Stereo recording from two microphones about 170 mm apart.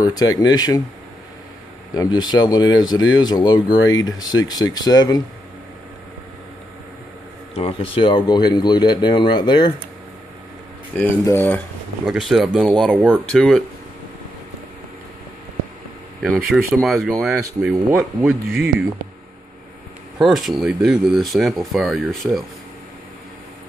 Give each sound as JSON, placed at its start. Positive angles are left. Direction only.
{"t": 0.1, "sound": "speech", "side_deg": 25}
{"t": 2.0, "sound": "speech", "side_deg": 25}
{"t": 7.5, "sound": "speech", "side_deg": 30}
{"t": 11.0, "sound": "speech", "side_deg": 10}
{"t": 12.1, "sound": "speech", "side_deg": 0}
{"t": 16.2, "sound": "speech", "side_deg": 0}
{"t": 20.2, "sound": "speech", "side_deg": 0}